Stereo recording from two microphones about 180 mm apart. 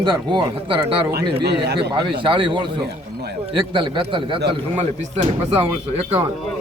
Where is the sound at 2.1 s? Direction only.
25° right (ahead or behind).